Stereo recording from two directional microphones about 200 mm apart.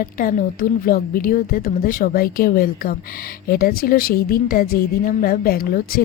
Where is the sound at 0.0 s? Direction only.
45° left (ahead or behind).